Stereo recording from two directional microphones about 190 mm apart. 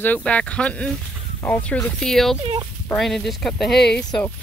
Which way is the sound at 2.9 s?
Centre (ahead or behind).